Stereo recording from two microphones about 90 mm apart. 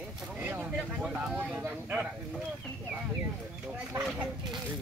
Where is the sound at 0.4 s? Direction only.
15° right (ahead or behind).